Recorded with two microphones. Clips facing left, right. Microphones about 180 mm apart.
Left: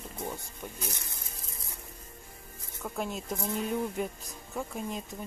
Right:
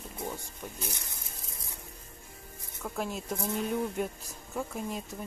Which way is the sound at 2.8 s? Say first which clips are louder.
Even; centre (ahead or behind).